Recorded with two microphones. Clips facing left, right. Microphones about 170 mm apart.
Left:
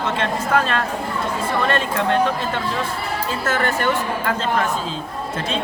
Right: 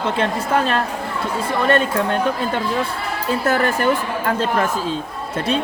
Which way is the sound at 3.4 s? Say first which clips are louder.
Right 3 dB; 35° right (ahead or behind).